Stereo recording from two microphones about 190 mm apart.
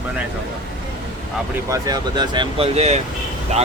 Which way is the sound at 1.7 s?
20° right (ahead or behind).